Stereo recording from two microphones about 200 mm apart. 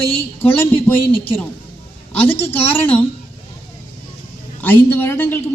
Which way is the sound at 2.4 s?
30° left (ahead or behind).